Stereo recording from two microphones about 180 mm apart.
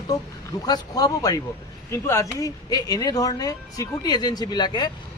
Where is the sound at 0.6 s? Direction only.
20° left (ahead or behind).